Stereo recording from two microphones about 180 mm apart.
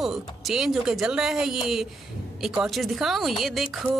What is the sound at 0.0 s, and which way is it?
Speech, centre (ahead or behind).